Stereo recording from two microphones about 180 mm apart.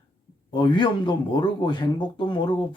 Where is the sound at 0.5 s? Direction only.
25° left (ahead or behind).